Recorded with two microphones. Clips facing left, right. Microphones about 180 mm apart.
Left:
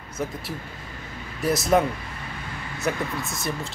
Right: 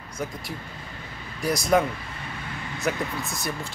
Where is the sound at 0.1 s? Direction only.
5° left (ahead or behind).